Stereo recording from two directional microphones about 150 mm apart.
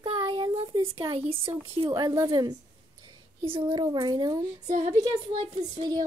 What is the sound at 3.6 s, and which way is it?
Speech, 30° right (ahead or behind).